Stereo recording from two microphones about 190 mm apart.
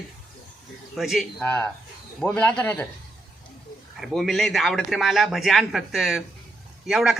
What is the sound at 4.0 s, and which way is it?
Speech, centre (ahead or behind).